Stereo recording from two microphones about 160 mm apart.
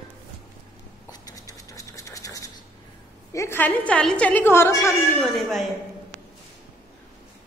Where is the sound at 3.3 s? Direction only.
15° left (ahead or behind).